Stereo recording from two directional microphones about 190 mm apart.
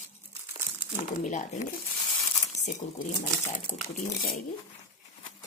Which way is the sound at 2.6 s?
40° left (ahead or behind).